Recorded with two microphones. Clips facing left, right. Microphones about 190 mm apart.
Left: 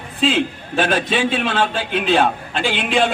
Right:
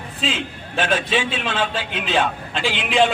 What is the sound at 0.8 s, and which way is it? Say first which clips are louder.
A man's voice: left 3 dB; 50° left (ahead or behind).